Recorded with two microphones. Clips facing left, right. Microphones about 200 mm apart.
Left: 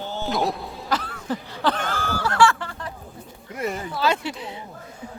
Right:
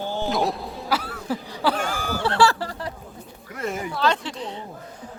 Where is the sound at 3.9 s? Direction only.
10° left (ahead or behind).